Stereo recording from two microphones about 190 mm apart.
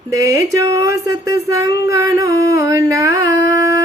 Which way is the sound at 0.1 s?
15° right (ahead or behind).